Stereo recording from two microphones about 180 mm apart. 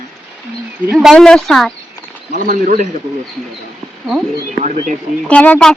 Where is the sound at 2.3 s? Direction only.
50° right (ahead or behind).